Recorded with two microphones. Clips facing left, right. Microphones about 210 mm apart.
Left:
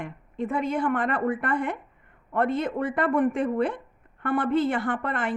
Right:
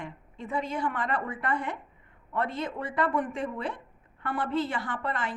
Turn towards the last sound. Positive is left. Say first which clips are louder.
# left 5 dB
turn(degrees=55)  # may be behind; listen again after turning